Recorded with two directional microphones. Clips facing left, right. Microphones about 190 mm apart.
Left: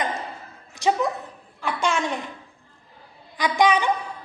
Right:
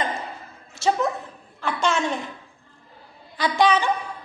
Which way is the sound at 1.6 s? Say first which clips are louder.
Right 1 dB; 15° left (ahead or behind).